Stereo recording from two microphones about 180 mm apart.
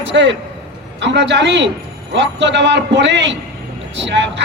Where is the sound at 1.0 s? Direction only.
80° right.